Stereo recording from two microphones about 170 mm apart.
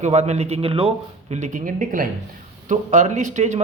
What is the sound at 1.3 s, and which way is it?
A man's voice, 45° right (ahead or behind).